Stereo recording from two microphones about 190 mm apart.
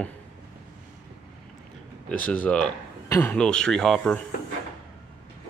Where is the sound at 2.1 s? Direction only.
5° left (ahead or behind).